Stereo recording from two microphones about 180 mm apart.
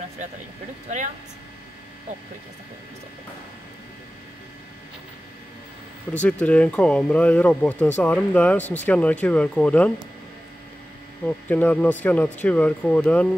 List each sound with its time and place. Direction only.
0.8 s speech: 40° right (ahead or behind)
6.1 s speech: 10° left (ahead or behind)
11.2 s speech: 10° left (ahead or behind)